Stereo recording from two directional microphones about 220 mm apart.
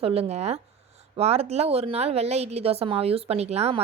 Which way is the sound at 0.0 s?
25° right (ahead or behind).